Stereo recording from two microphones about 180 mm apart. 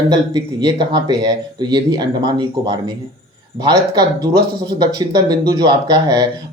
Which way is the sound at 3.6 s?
20° right (ahead or behind).